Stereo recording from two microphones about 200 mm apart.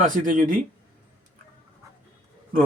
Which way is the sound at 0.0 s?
40° right (ahead or behind).